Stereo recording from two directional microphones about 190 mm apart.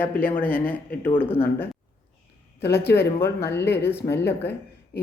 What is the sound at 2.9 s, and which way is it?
Speech, 10° left (ahead or behind).